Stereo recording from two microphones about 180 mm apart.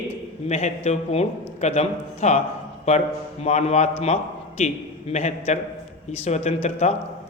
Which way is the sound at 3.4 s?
35° left (ahead or behind).